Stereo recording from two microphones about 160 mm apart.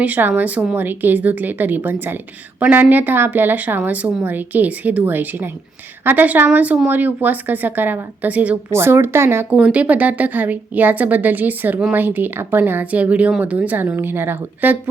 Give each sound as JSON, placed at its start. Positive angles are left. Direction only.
{"t": 0.0, "sound": "speech", "side_deg": -10}